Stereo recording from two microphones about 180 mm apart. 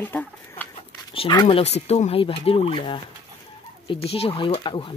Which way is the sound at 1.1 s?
25° left (ahead or behind).